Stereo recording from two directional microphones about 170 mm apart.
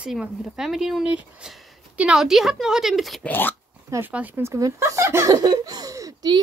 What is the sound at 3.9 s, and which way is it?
Speech, 10° right (ahead or behind).